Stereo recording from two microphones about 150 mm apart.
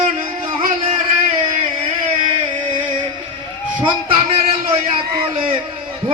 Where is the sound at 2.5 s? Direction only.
30° right (ahead or behind).